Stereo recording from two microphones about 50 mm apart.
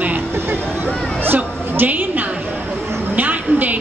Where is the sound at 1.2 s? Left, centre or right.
Right.